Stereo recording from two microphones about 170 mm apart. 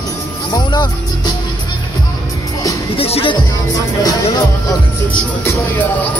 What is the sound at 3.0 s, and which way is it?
Music, 35° left (ahead or behind).